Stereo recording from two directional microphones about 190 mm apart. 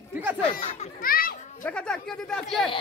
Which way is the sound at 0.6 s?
35° left (ahead or behind).